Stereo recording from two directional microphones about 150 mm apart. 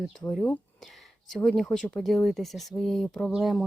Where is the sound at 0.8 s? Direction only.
Centre (ahead or behind).